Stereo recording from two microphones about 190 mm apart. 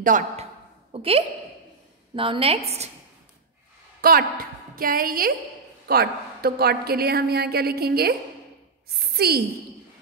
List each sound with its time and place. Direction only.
0.0 s a man's voice: 45° right (ahead or behind)
0.9 s a woman's voice: 30° right (ahead or behind)
4.0 s a woman's voice: 50° right (ahead or behind)